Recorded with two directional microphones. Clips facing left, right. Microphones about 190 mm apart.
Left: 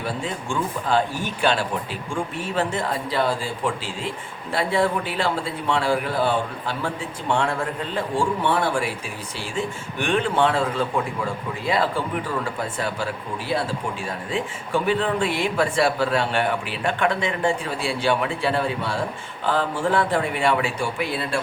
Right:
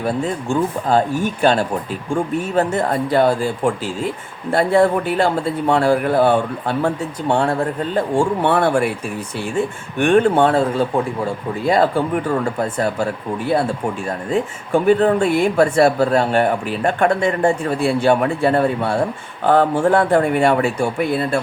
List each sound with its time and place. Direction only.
0.0 s speech: 45° right (ahead or behind)
7.3 s a man's voice: 35° right (ahead or behind)
8.4 s speech: 55° right (ahead or behind)
10.0 s speech: 50° right (ahead or behind)